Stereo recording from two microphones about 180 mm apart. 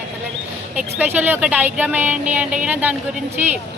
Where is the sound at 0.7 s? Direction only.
10° right (ahead or behind).